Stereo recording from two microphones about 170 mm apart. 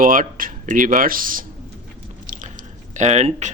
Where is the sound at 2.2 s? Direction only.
50° right (ahead or behind).